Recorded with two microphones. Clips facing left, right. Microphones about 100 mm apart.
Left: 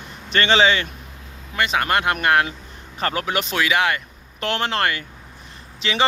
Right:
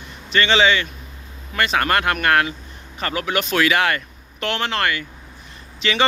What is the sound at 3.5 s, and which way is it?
Speech, 10° left (ahead or behind).